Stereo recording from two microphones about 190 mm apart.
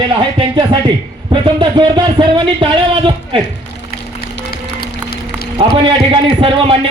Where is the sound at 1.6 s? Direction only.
25° right (ahead or behind).